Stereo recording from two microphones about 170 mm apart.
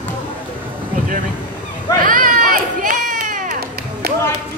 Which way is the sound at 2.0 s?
55° right (ahead or behind).